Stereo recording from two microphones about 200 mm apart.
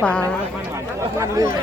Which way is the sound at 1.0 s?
15° right (ahead or behind).